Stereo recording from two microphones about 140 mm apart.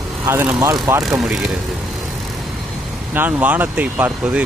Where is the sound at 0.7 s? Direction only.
25° right (ahead or behind).